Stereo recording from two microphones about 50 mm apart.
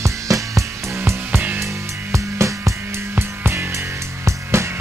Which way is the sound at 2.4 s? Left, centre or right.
Right.